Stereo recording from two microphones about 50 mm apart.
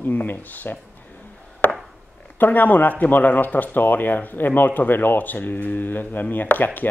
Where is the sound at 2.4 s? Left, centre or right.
Left.